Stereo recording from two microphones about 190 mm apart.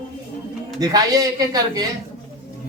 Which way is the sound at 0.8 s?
20° right (ahead or behind).